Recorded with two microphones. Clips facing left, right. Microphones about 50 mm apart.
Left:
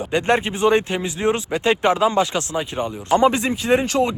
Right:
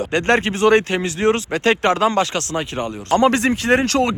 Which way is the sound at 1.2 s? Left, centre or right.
Centre.